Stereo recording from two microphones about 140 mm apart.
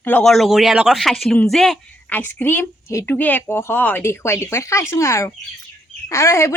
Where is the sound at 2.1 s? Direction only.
15° left (ahead or behind).